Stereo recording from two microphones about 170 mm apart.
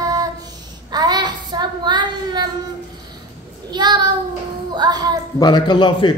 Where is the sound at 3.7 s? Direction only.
25° right (ahead or behind).